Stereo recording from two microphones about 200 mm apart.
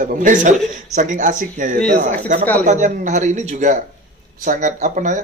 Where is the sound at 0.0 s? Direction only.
40° right (ahead or behind).